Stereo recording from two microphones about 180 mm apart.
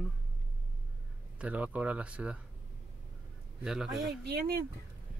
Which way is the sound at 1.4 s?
10° right (ahead or behind).